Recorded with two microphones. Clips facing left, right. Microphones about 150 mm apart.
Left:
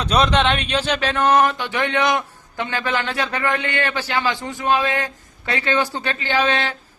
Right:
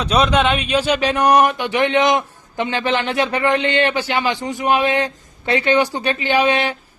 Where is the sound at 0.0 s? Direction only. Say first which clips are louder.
Right 2 dB; 5° right (ahead or behind).